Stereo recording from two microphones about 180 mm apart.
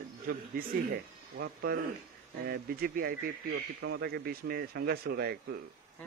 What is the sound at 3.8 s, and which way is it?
Speech, 70° right (ahead or behind).